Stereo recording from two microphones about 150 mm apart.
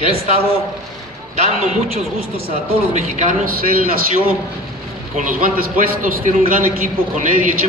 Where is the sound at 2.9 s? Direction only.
55° right (ahead or behind); by 4.0 s 75° right (ahead or behind).